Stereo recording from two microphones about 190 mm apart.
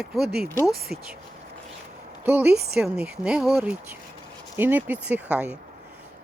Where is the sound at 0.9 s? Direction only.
40° left (ahead or behind).